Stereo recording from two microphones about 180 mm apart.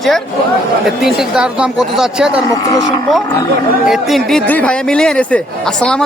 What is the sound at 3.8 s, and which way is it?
A man's voice, centre (ahead or behind).